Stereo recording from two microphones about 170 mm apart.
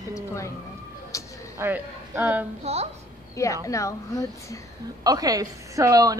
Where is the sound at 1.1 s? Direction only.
20° left (ahead or behind).